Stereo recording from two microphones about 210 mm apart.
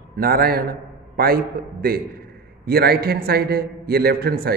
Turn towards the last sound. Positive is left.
turn(degrees=-45)  # may be behind; listen again after turning